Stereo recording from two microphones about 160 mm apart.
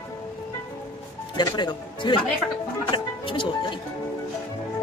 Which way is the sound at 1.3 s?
25° left (ahead or behind).